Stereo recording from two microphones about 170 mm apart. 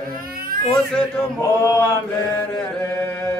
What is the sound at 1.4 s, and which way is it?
Chant, 15° left (ahead or behind).